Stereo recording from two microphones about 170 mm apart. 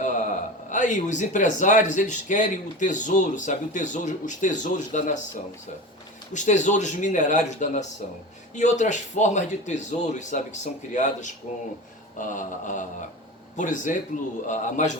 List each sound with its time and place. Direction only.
0.0 s a man's voice: 45° left (ahead or behind)
6.3 s a man's voice: 45° left (ahead or behind)
12.3 s a man's voice: 50° left (ahead or behind)